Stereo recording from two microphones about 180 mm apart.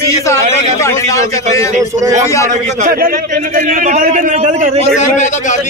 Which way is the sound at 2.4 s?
50° right (ahead or behind).